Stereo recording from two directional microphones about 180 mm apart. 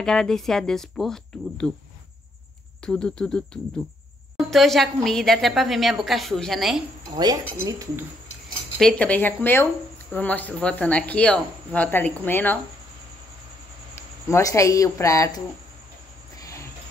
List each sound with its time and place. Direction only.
0.0 s a woman's voice: 5° left (ahead or behind)
2.8 s a woman's voice: 5° left (ahead or behind)
4.5 s a woman's voice: centre (ahead or behind)
7.2 s speech: 20° right (ahead or behind)
8.7 s speech: 5° left (ahead or behind)
13.9 s speech: 15° left (ahead or behind)
16.3 s cricket: 20° left (ahead or behind)